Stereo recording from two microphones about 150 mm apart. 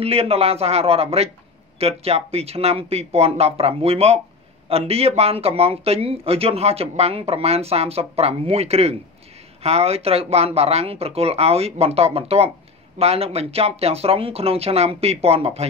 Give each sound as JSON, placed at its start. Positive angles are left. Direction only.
{"t": 0.0, "sound": "speech", "side_deg": -40}